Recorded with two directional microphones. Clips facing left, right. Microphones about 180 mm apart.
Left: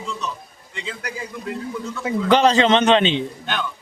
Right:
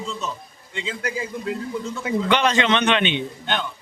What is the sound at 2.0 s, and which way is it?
A man's voice, 35° left (ahead or behind).